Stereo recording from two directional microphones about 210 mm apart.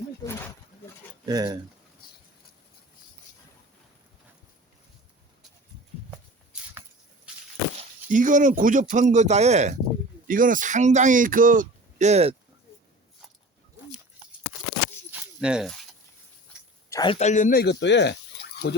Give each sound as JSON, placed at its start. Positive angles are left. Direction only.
{"t": 0.2, "sound": "snake", "side_deg": 20}
{"t": 1.2, "sound": "speech", "side_deg": -20}
{"t": 8.1, "sound": "speech", "side_deg": -40}
{"t": 15.1, "sound": "a sound", "side_deg": -5}
{"t": 16.9, "sound": "speech", "side_deg": 20}
{"t": 17.2, "sound": "speech", "side_deg": 35}